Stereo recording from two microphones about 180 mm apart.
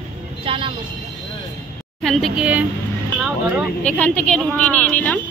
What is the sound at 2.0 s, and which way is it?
A woman's voice, centre (ahead or behind).